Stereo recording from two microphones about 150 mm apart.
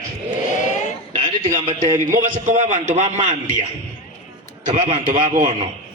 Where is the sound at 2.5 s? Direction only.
55° right (ahead or behind).